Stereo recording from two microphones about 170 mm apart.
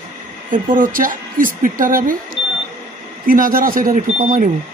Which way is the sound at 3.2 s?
55° right (ahead or behind).